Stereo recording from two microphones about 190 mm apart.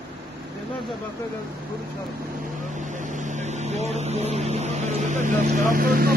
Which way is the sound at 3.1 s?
40° right (ahead or behind).